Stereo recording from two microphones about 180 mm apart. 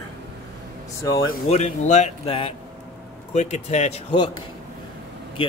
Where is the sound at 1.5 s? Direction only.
40° left (ahead or behind).